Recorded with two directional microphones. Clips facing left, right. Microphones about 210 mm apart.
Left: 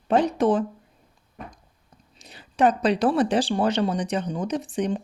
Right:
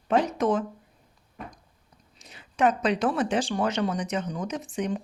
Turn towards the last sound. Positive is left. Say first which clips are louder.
# left 4 dB
turn(degrees=35)  # may be behind; listen again after turning